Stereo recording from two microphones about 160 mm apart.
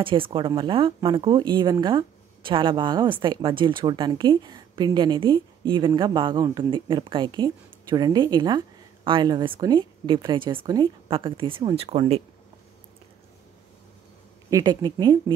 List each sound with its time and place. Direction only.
0.0 s speech: 30° right (ahead or behind)
14.5 s speech: 25° right (ahead or behind)